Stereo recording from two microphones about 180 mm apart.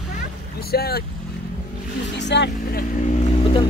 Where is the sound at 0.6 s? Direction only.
60° left (ahead or behind).